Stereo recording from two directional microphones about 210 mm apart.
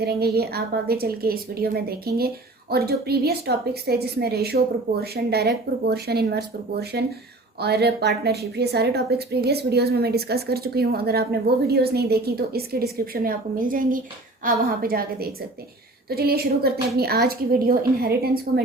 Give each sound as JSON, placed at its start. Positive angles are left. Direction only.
{"t": 0.0, "sound": "a woman's voice", "side_deg": -50}